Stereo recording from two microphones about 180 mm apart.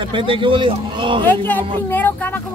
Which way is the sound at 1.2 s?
10° left (ahead or behind).